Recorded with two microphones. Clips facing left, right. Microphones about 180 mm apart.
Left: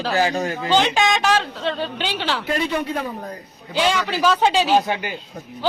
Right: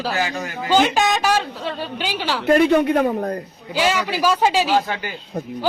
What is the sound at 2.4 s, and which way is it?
Speech, 55° right (ahead or behind).